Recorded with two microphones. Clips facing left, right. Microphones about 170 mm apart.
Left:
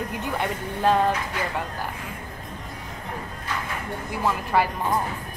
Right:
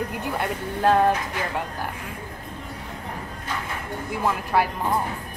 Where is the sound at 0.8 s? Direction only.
15° right (ahead or behind).